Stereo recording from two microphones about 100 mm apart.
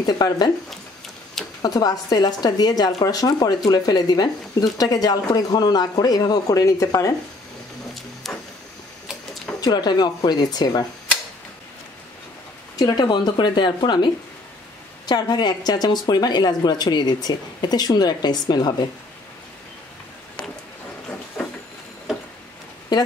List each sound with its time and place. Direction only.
0.0 s speech: 40° left (ahead or behind)
1.6 s speech: 40° left (ahead or behind)
8.2 s a sound: centre (ahead or behind)
9.6 s speech: 45° left (ahead or behind)
12.7 s speech: 40° left (ahead or behind)
22.9 s speech: 40° left (ahead or behind)